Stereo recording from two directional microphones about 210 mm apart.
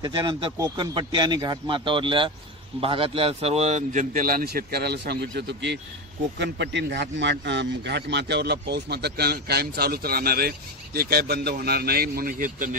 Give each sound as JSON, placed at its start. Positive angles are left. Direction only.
{"t": 0.0, "sound": "a man's voice", "side_deg": -20}